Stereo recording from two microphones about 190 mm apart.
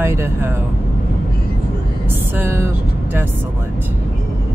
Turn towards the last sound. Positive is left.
turn(degrees=-10)  # may be behind; listen again after turning